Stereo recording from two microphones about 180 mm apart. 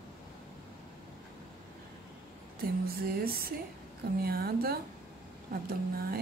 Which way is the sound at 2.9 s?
55° right (ahead or behind).